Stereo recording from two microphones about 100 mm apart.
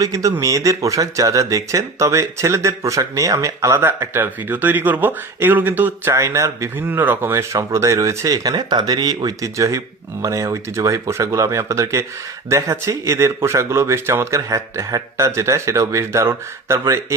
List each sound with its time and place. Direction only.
0.0 s speech: 35° right (ahead or behind)